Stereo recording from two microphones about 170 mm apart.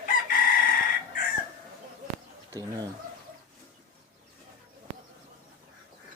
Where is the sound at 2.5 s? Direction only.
20° right (ahead or behind).